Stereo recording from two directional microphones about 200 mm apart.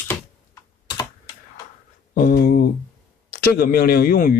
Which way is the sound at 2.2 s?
45° left (ahead or behind).